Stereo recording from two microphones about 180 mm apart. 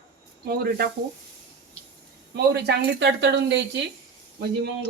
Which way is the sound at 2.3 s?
65° right (ahead or behind).